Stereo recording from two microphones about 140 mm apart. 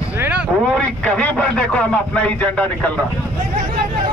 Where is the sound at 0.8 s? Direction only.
10° left (ahead or behind).